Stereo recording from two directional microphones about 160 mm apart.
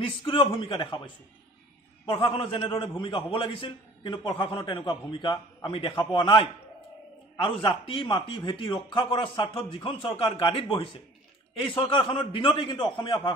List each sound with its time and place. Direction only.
0.0 s a man's voice: 30° left (ahead or behind)